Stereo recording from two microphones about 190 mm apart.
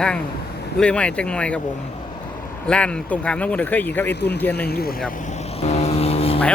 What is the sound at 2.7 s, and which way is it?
Speech, 5° left (ahead or behind).